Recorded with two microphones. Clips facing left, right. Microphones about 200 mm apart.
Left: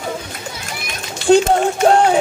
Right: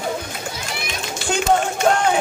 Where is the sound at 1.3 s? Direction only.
35° left (ahead or behind).